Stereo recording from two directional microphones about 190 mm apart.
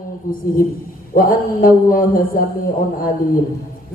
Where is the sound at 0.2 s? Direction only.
50° left (ahead or behind).